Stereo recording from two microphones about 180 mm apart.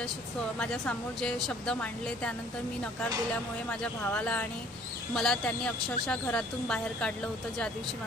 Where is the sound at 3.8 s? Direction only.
5° left (ahead or behind).